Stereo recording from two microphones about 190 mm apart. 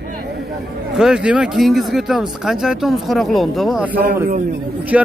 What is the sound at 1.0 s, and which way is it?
Speech, 5° right (ahead or behind).